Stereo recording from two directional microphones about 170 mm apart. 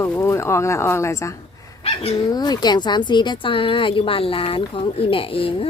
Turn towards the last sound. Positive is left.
turn(degrees=30)  # may be behind; listen again after turning